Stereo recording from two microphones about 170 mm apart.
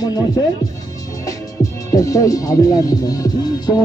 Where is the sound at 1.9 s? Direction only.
20° left (ahead or behind).